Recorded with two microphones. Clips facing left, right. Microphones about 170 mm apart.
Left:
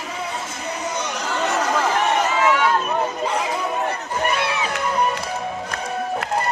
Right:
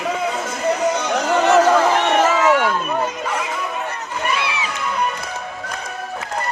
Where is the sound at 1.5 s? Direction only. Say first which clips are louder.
Right 8 dB; 90° right.